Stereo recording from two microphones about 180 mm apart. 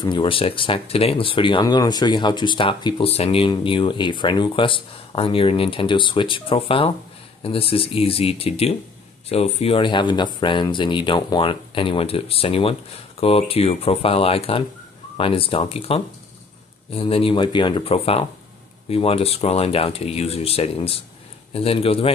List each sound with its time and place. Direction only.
0.0 s speech: 30° left (ahead or behind)